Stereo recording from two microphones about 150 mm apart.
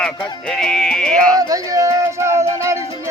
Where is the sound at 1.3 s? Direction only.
25° right (ahead or behind).